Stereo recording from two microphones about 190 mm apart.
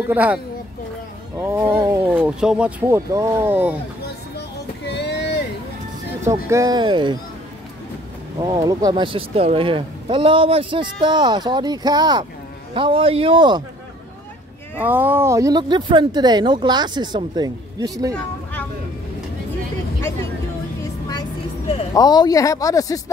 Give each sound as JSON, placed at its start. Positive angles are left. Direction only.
{"t": 0.1, "sound": "speech", "side_deg": -10}
{"t": 1.4, "sound": "speech", "side_deg": -10}
{"t": 4.8, "sound": "vehicle", "side_deg": 60}
{"t": 6.2, "sound": "speech", "side_deg": -15}
{"t": 8.4, "sound": "speech", "side_deg": -20}
{"t": 14.8, "sound": "speech", "side_deg": -10}
{"t": 21.9, "sound": "speech", "side_deg": 20}